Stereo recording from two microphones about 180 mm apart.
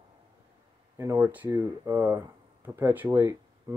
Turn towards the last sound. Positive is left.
turn(degrees=-15)  # may be behind; listen again after turning